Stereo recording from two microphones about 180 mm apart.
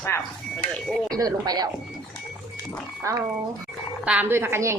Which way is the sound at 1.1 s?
20° right (ahead or behind).